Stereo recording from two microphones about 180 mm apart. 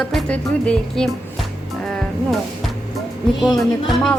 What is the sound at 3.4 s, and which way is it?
Speech, centre (ahead or behind).